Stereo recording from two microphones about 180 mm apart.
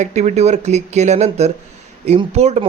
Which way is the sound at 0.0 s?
40° right (ahead or behind).